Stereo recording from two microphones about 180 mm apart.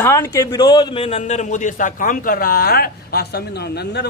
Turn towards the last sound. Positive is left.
turn(degrees=65)  # may be behind; listen again after turning